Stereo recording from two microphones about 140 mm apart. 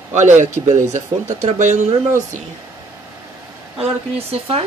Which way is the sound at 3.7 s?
45° right (ahead or behind).